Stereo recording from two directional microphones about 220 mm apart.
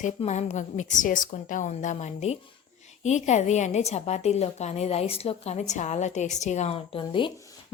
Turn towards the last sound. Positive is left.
turn(degrees=20)  # may be behind; listen again after turning